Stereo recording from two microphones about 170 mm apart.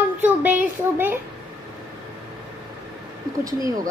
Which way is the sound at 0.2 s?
10° right (ahead or behind).